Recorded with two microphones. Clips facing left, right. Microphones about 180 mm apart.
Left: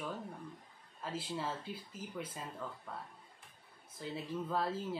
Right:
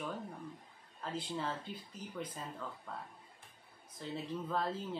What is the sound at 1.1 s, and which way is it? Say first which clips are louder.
Speech: right 1 dB; 5° left (ahead or behind).